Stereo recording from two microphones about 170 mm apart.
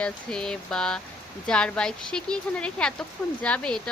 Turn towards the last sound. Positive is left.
turn(degrees=5)  # may be behind; listen again after turning